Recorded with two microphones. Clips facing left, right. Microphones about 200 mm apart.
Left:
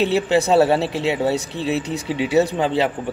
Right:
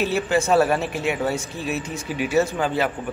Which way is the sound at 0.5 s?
30° left (ahead or behind).